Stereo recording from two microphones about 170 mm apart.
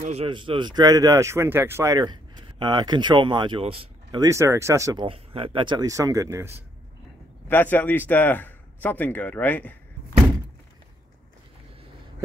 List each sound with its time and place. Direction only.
0.0 s speech: 40° right (ahead or behind)
0.3 s speech: 30° right (ahead or behind)
4.2 s speech: 15° right (ahead or behind)
5.0 s speech: 35° right (ahead or behind); by 6.5 s 15° right (ahead or behind)
7.4 s a man's voice: 10° left (ahead or behind)